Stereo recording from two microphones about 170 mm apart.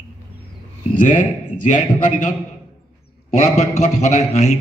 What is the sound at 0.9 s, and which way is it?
A man's voice, 45° left (ahead or behind).